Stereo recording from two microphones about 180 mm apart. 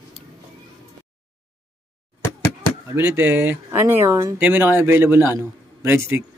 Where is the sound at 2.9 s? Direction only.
15° right (ahead or behind).